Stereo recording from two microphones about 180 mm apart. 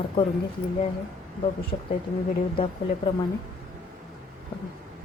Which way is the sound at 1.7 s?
30° left (ahead or behind).